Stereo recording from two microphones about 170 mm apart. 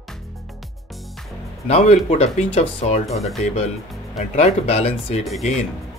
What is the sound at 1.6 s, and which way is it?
Speech, 40° left (ahead or behind).